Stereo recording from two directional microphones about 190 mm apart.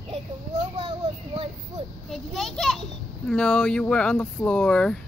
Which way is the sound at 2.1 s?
Centre (ahead or behind).